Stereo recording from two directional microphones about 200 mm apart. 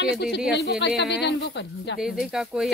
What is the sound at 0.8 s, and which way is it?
Speech, 60° left (ahead or behind).